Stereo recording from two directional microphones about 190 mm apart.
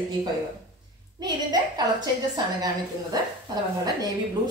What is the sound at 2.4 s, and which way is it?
A woman's voice, 20° right (ahead or behind).